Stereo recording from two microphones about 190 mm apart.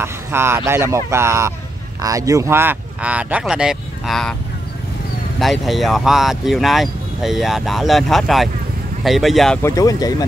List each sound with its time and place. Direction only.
0.0 s speech: 10° right (ahead or behind)
5.4 s speech: centre (ahead or behind)
9.6 s speech: 15° left (ahead or behind)